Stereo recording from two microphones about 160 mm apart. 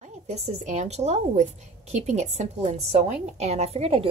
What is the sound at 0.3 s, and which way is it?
A woman's voice, 45° right (ahead or behind).